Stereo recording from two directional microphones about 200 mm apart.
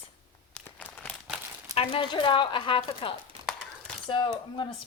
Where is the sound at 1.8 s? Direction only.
25° left (ahead or behind).